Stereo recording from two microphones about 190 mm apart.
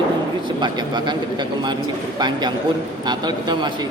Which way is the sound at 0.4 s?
25° right (ahead or behind).